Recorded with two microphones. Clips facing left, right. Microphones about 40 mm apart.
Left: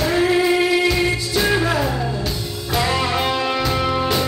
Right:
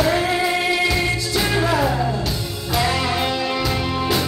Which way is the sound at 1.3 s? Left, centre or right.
Centre.